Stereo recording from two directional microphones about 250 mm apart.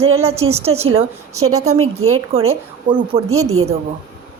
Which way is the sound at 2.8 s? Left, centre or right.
Centre.